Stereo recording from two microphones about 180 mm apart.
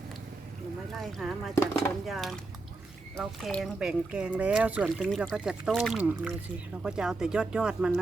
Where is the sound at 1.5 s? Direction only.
15° left (ahead or behind).